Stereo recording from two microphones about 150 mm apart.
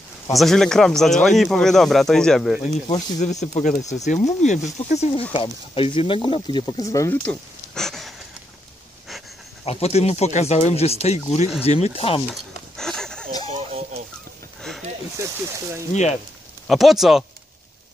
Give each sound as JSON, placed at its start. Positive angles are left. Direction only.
{"t": 0.3, "sound": "speech", "side_deg": 0}
{"t": 3.2, "sound": "speech", "side_deg": 50}
{"t": 5.3, "sound": "speech", "side_deg": 35}
{"t": 7.2, "sound": "a sound", "side_deg": 5}
{"t": 9.7, "sound": "speech", "side_deg": 45}
{"t": 12.3, "sound": "a sound", "side_deg": 5}
{"t": 13.5, "sound": "a sound", "side_deg": -45}
{"t": 15.9, "sound": "speech", "side_deg": 50}
{"t": 16.6, "sound": "speech", "side_deg": 0}